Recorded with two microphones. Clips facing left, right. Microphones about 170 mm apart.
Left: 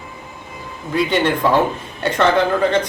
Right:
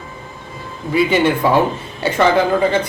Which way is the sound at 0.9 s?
5° right (ahead or behind).